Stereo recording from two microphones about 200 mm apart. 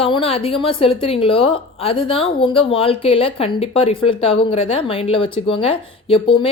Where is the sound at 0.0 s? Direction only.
30° left (ahead or behind).